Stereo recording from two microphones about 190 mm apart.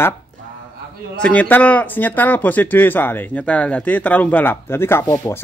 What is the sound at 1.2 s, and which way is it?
Speech, 10° left (ahead or behind).